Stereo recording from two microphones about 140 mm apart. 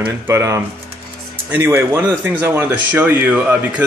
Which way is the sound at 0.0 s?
20° right (ahead or behind).